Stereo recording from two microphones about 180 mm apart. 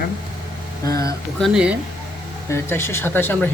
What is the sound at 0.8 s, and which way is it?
Speech, 20° left (ahead or behind).